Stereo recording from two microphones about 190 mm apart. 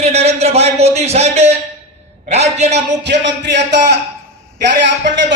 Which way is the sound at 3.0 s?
65° right (ahead or behind).